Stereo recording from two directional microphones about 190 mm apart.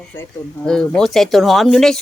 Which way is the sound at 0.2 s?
5° left (ahead or behind).